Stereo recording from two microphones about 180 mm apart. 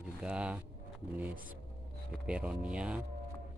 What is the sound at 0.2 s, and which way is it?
Speech, 5° right (ahead or behind).